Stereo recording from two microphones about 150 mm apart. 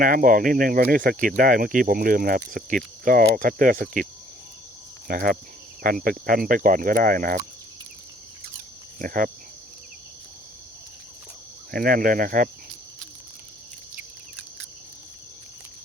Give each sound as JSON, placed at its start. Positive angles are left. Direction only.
{"t": 0.0, "sound": "speech", "side_deg": -65}
{"t": 5.0, "sound": "speech", "side_deg": -80}
{"t": 9.0, "sound": "speech", "side_deg": -70}
{"t": 11.7, "sound": "speech", "side_deg": -70}